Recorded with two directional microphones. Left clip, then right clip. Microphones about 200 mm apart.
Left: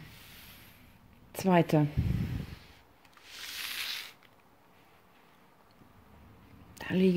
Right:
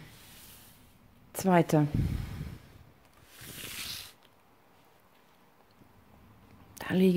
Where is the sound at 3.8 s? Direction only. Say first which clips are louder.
Left 3 dB; 5° right (ahead or behind).